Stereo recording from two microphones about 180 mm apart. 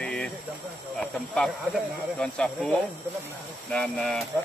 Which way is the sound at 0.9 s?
5° left (ahead or behind).